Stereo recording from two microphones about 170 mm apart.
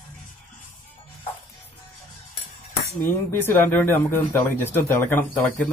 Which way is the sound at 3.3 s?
15° left (ahead or behind).